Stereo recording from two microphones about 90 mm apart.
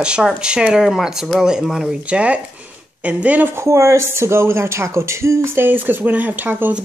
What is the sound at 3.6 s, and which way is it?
Speech, 35° right (ahead or behind).